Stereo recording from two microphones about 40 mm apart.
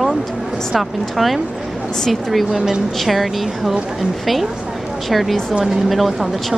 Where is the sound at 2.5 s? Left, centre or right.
Centre.